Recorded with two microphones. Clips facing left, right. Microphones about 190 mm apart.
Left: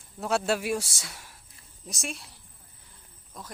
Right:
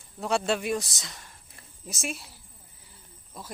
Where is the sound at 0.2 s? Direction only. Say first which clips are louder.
Even; 5° left (ahead or behind).